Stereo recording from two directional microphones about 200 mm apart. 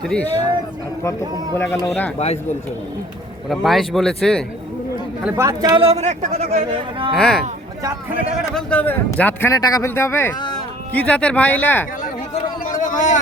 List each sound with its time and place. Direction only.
0.0 s speech: 5° left (ahead or behind)
1.5 s speech: centre (ahead or behind)
2.1 s speech: 35° left (ahead or behind)
3.5 s speech: centre (ahead or behind)
5.2 s a man's voice: 15° right (ahead or behind); by 6.6 s 35° right (ahead or behind)
7.1 s speech: 5° left (ahead or behind)
12.0 s a sound: 40° left (ahead or behind)